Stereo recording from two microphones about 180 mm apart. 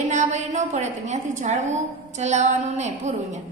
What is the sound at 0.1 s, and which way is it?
A woman's voice, 40° right (ahead or behind).